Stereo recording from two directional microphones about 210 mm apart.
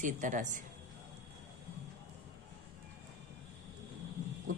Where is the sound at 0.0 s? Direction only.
35° right (ahead or behind).